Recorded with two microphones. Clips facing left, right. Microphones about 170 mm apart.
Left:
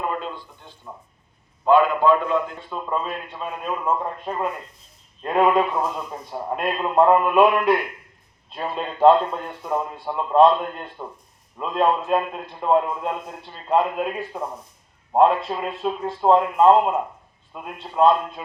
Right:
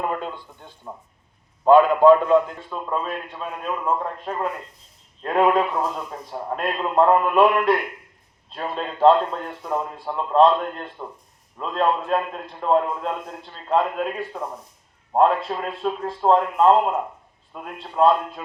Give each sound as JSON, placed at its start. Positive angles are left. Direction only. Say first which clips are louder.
{"t": 0.8, "sound": "speech", "louder": "right 2 dB", "side_deg": -30}
{"t": 1.6, "sound": "a man's voice", "louder": "right 4 dB", "side_deg": -45}
{"t": 2.6, "sound": "a man's voice", "louder": "even", "side_deg": 0}